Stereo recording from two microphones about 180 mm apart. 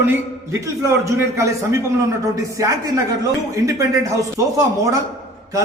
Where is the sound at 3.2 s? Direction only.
15° right (ahead or behind).